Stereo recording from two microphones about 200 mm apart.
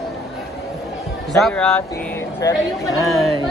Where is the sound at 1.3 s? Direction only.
5° left (ahead or behind).